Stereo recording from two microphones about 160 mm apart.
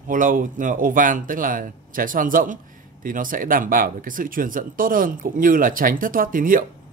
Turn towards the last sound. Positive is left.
turn(degrees=-60)  # may be behind; listen again after turning